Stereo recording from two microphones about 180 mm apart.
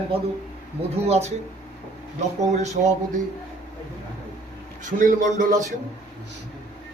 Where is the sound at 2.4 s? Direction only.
40° right (ahead or behind).